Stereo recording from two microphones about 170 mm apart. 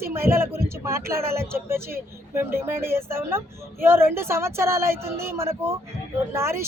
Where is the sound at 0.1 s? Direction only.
15° right (ahead or behind).